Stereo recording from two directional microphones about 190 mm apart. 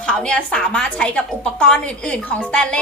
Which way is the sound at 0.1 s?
5° left (ahead or behind).